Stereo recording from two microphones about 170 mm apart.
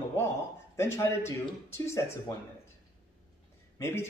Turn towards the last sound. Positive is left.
turn(degrees=15)  # may be behind; listen again after turning